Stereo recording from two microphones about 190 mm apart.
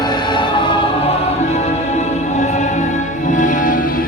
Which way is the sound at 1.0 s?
35° left (ahead or behind).